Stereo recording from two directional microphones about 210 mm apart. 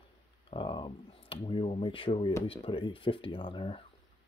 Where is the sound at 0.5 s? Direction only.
25° left (ahead or behind).